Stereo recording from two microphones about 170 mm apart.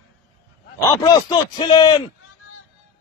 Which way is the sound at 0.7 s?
20° left (ahead or behind).